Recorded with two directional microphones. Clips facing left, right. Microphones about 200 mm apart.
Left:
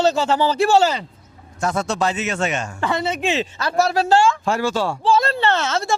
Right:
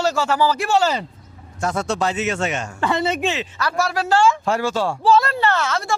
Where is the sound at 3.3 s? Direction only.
25° left (ahead or behind).